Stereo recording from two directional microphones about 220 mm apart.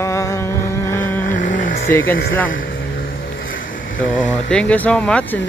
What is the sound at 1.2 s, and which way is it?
Vehicle, 35° left (ahead or behind).